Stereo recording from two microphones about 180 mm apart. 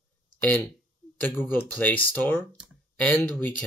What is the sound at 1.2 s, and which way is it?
Speech, 10° left (ahead or behind).